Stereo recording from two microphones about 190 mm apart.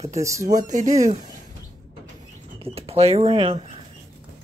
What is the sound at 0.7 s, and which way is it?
Speech, 40° right (ahead or behind).